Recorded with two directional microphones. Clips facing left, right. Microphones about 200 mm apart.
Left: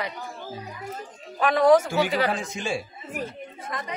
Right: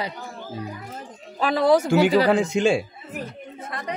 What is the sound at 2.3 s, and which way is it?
Speech, 80° right.